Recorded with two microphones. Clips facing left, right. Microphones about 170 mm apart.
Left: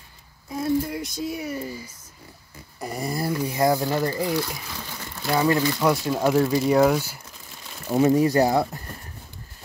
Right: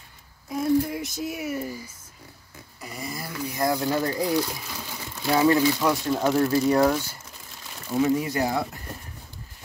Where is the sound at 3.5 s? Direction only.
20° left (ahead or behind).